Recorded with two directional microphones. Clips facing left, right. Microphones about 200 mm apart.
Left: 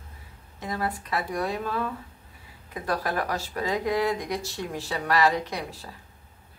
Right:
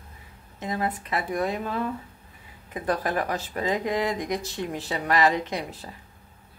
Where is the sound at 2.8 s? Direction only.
20° right (ahead or behind).